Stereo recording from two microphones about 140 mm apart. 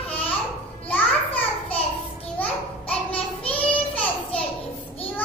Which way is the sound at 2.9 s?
10° left (ahead or behind).